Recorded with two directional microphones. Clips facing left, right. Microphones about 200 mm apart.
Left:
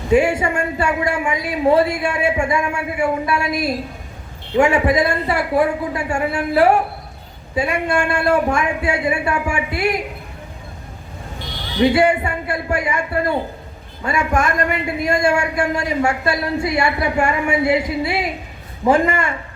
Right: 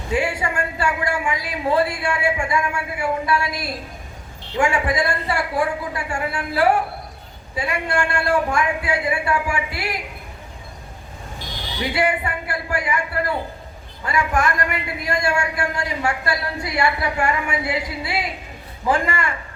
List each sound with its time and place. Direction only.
0.1 s a man's voice: 25° left (ahead or behind)
11.8 s a man's voice: 25° left (ahead or behind)